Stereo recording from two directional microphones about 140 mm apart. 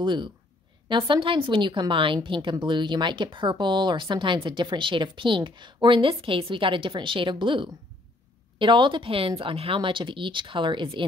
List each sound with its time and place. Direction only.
0.0 s a woman's voice: 35° right (ahead or behind)